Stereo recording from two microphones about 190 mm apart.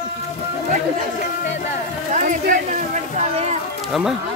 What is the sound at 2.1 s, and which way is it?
Speech, 45° right (ahead or behind).